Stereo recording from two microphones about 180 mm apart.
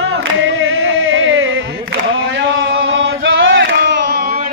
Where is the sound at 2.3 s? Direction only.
80° right; by 4.3 s 65° right (ahead or behind).